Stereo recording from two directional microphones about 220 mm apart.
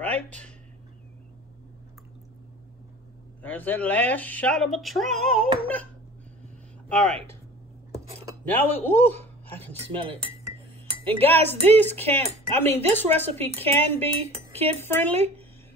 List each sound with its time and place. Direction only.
0.0 s speech: 5° left (ahead or behind)
3.4 s speech: 5° left (ahead or behind)
6.9 s speech: 5° left (ahead or behind)
8.5 s speech: 10° left (ahead or behind)
11.1 s speech: 10° left (ahead or behind)
15.1 s speech: 30° right (ahead or behind)